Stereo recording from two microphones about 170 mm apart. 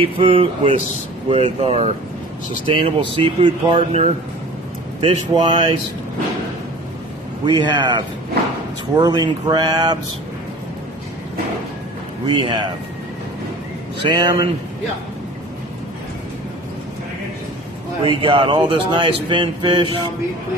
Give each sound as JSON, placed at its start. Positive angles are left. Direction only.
{"t": 0.0, "sound": "speech", "side_deg": -30}
{"t": 7.4, "sound": "speech", "side_deg": -25}
{"t": 12.4, "sound": "speech", "side_deg": -30}
{"t": 14.0, "sound": "speech", "side_deg": -25}
{"t": 18.0, "sound": "speech", "side_deg": -30}